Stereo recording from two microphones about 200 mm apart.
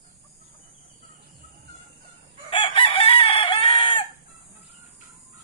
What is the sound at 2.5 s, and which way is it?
Chicken, 25° left (ahead or behind).